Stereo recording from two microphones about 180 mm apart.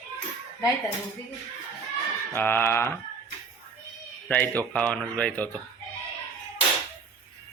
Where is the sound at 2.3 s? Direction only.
10° left (ahead or behind).